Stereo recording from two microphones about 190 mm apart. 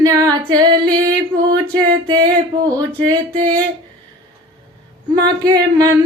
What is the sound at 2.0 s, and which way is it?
Music, 25° right (ahead or behind).